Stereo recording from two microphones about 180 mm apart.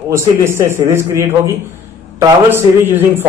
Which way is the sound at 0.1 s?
15° right (ahead or behind).